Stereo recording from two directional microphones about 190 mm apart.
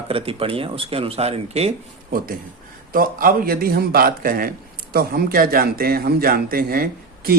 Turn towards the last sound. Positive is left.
turn(degrees=-50)  # may be behind; listen again after turning